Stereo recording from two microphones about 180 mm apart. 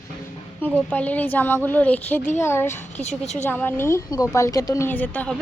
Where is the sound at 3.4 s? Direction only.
10° left (ahead or behind).